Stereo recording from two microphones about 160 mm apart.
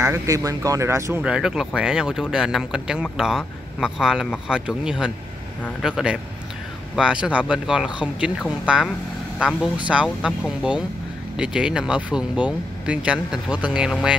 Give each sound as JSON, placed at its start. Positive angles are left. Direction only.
{"t": 0.0, "sound": "speech", "side_deg": -20}
{"t": 1.2, "sound": "speech", "side_deg": -5}